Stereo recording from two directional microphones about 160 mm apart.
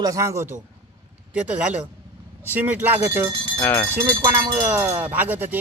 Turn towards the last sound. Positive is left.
turn(degrees=-10)  # may be behind; listen again after turning